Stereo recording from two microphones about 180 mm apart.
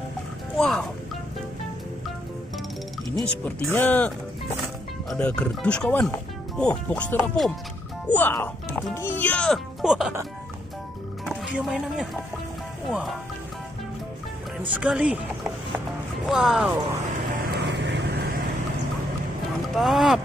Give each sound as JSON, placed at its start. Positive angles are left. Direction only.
{"t": 0.6, "sound": "speech", "side_deg": 5}
{"t": 3.4, "sound": "speech", "side_deg": 10}
{"t": 5.1, "sound": "a child's voice", "side_deg": 5}
{"t": 11.2, "sound": "speech", "side_deg": 0}
{"t": 14.7, "sound": "speech", "side_deg": -5}
{"t": 16.3, "sound": "speech", "side_deg": 0}
{"t": 17.4, "sound": "vehicle", "side_deg": -60}
{"t": 19.7, "sound": "speech", "side_deg": 0}